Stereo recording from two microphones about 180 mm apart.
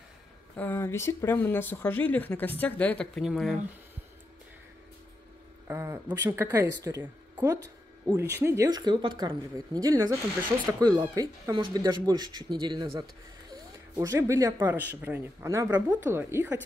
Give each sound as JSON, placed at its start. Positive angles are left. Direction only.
{"t": 0.6, "sound": "speech", "side_deg": 10}
{"t": 5.7, "sound": "speech", "side_deg": -15}
{"t": 13.9, "sound": "speech", "side_deg": -15}